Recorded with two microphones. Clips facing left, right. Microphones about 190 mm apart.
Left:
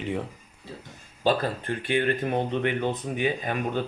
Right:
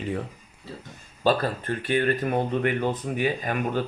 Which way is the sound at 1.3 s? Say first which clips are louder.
Right 1 dB; 15° left (ahead or behind).